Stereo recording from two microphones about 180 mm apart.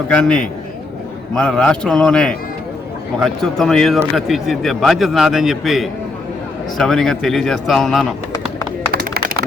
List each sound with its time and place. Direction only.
0.1 s speech: 5° left (ahead or behind)
1.4 s speech: 5° left (ahead or behind)
8.9 s a sound: 55° right (ahead or behind)